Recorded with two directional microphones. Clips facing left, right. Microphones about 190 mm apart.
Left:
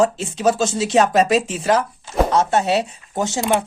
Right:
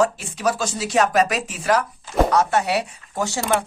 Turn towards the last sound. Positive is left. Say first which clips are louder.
# left 3 dB
turn(degrees=20)  # may be behind; listen again after turning